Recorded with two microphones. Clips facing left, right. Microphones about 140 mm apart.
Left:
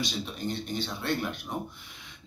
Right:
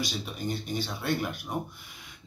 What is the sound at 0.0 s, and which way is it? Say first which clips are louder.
A man's voice: even; 5° right (ahead or behind).